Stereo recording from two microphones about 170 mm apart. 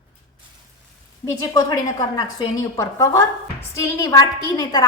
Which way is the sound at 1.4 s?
25° left (ahead or behind).